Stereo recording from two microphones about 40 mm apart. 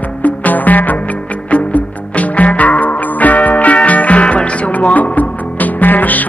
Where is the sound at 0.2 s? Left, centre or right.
Left.